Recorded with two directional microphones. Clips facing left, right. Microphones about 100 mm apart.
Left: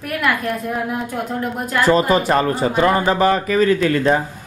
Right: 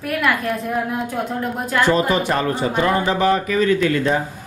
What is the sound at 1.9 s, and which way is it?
A man's voice, 40° left (ahead or behind).